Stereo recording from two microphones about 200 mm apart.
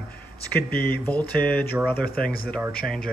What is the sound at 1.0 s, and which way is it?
Speech, 10° left (ahead or behind).